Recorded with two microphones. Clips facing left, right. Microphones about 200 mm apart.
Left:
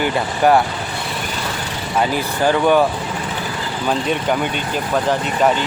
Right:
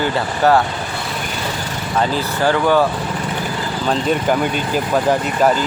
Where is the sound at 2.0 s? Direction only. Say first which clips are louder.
Even; 15° left (ahead or behind).